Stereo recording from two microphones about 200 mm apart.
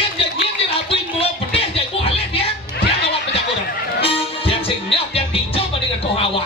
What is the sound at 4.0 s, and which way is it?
Music, 30° left (ahead or behind).